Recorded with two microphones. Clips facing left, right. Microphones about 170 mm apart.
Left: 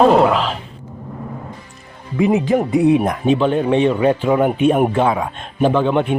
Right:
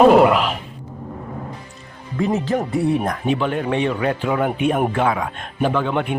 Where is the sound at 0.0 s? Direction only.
5° right (ahead or behind).